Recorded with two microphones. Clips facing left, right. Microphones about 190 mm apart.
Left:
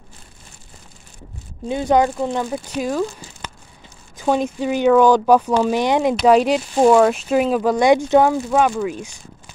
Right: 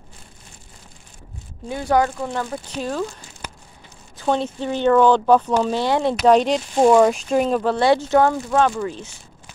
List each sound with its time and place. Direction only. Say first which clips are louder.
1.7 s speech: left 3 dB; 20° left (ahead or behind)
4.2 s speech: left 3 dB; 10° left (ahead or behind)